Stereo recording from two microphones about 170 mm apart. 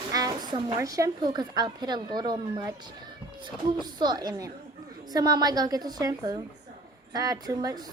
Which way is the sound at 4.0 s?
25° right (ahead or behind).